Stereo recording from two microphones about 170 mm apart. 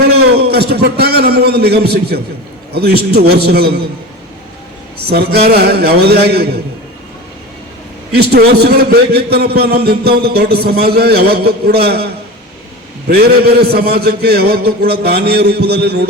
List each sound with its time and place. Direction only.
0.0 s a man's voice: 65° right (ahead or behind)
4.9 s a man's voice: 65° right (ahead or behind)
8.1 s a man's voice: 70° right (ahead or behind)